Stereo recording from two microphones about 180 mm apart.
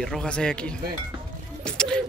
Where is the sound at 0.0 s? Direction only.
5° left (ahead or behind).